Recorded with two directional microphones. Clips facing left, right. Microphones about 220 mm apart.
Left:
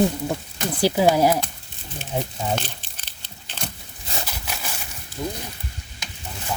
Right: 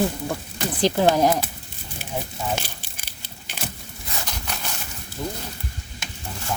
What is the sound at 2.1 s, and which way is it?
Speech, 20° left (ahead or behind).